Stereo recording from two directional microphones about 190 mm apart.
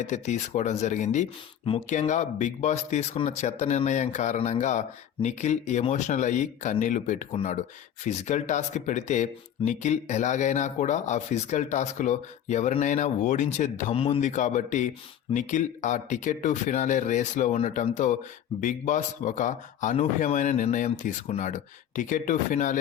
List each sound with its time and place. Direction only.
0.0 s speech: 40° left (ahead or behind)